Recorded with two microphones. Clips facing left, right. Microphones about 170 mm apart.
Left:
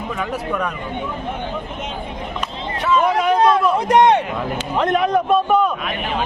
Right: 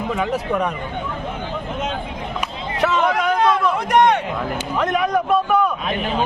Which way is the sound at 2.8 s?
75° right (ahead or behind).